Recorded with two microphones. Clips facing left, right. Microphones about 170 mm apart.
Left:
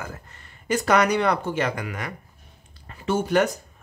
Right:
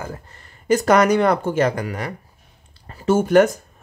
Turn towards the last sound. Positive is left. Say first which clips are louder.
# right 7 dB
turn(degrees=-50)  # may be behind; listen again after turning